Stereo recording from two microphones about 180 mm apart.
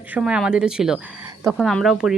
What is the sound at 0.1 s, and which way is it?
Speech, 5° right (ahead or behind).